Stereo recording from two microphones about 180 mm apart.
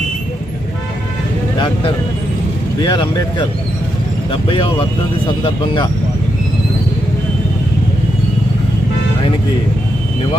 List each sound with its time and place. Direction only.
2.8 s speech: 25° left (ahead or behind)